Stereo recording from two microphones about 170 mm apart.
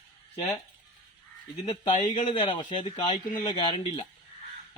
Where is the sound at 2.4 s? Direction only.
30° left (ahead or behind).